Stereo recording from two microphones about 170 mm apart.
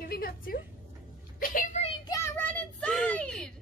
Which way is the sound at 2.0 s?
20° left (ahead or behind).